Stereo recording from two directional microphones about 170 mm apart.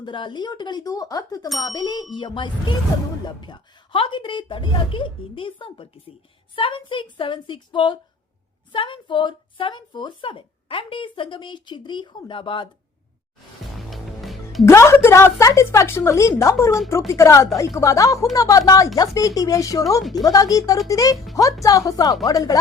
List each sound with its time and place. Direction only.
0.0 s a woman's voice: 30° left (ahead or behind)
13.7 s music: centre (ahead or behind)
14.6 s a woman's voice: 15° left (ahead or behind)
20.0 s speech: centre (ahead or behind)
20.2 s a woman's voice: 20° left (ahead or behind)